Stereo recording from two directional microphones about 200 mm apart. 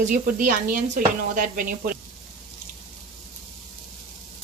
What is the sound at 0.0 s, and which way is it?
Speech, 40° right (ahead or behind).